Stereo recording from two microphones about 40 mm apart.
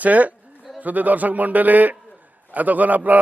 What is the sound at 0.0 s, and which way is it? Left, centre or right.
A man's voice, right.